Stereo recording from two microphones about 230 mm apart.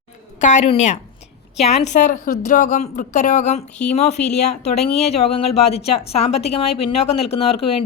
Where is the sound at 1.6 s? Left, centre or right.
Left.